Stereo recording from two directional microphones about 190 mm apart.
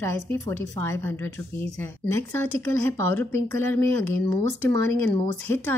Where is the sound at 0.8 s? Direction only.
10° left (ahead or behind).